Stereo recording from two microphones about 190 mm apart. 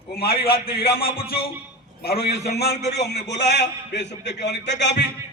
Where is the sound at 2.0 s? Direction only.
55° left (ahead or behind).